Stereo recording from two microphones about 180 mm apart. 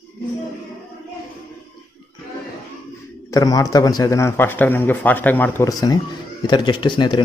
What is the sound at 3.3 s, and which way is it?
A man's voice, 20° left (ahead or behind).